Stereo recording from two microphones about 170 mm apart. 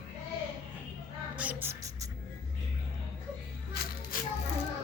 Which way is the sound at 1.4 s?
10° right (ahead or behind).